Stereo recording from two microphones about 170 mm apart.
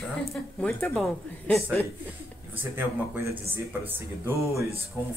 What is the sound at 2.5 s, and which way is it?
Speech, 10° right (ahead or behind).